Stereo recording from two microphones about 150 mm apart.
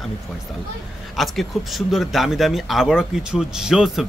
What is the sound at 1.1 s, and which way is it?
Speech, centre (ahead or behind).